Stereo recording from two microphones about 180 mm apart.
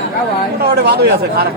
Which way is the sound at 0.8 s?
65° right (ahead or behind).